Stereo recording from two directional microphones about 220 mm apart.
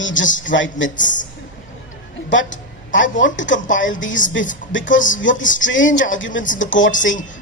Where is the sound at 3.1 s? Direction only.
55° left (ahead or behind).